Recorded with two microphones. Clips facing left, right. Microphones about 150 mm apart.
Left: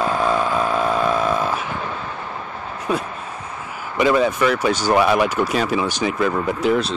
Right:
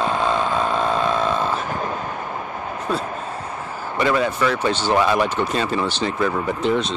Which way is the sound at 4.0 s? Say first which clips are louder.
Left 3 dB; 10° left (ahead or behind).